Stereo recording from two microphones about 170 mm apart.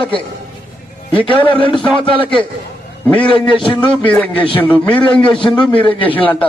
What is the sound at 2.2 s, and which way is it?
Speech, 10° left (ahead or behind).